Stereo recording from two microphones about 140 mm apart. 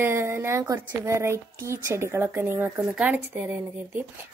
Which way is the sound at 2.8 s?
10° right (ahead or behind).